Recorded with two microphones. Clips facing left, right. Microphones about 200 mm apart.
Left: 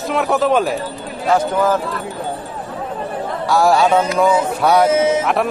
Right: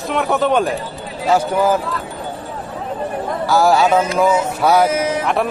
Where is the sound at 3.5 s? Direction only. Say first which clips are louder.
Even; centre (ahead or behind).